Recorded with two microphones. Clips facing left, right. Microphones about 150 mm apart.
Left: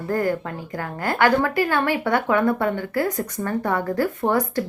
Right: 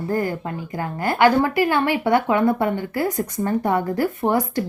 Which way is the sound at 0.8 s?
15° right (ahead or behind).